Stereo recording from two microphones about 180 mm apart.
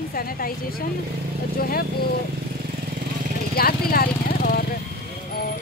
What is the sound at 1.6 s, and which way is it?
Speech, 55° left (ahead or behind).